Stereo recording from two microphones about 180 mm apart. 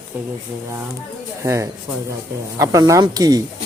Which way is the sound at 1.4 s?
15° right (ahead or behind).